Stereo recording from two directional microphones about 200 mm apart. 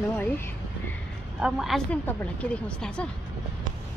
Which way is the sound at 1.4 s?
Centre (ahead or behind).